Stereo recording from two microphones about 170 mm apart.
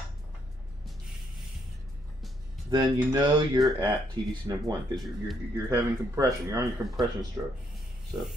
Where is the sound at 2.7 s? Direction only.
25° right (ahead or behind).